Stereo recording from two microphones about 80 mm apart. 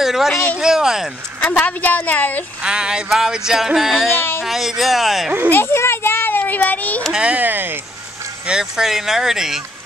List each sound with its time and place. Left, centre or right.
0.0 s speech: centre
0.6 s music: centre
1.5 s a woman's voice: left
2.6 s music: centre
4.1 s a woman's voice: left
4.4 s speech: centre
5.5 s a child's voice: left
7.0 s speech: centre; by 7.8 s right
8.5 s speech: centre